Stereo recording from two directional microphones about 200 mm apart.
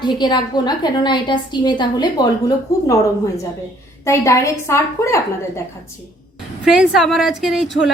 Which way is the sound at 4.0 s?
15° left (ahead or behind).